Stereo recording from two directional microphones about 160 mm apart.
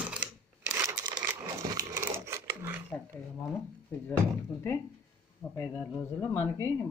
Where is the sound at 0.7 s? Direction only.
20° right (ahead or behind).